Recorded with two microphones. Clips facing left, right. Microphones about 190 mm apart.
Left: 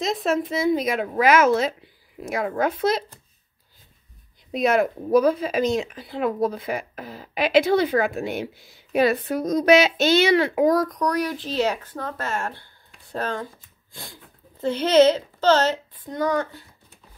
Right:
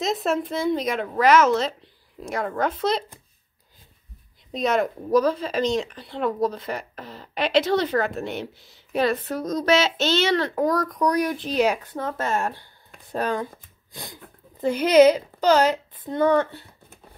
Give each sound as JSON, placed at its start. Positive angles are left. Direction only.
{"t": 0.0, "sound": "speech", "side_deg": 0}
{"t": 4.5, "sound": "speech", "side_deg": 10}
{"t": 11.1, "sound": "a woman's voice", "side_deg": -20}
{"t": 14.6, "sound": "speech", "side_deg": -10}
{"t": 16.1, "sound": "a woman's voice", "side_deg": -25}